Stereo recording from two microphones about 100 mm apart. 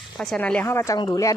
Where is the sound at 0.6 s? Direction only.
25° left (ahead or behind).